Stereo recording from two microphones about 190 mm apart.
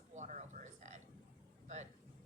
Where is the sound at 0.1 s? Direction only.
40° right (ahead or behind).